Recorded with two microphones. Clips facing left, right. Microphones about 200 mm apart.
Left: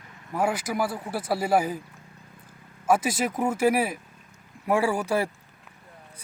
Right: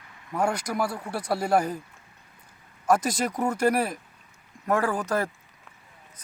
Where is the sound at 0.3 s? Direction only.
5° left (ahead or behind).